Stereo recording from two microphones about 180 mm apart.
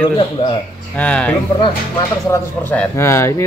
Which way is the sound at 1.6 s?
25° left (ahead or behind).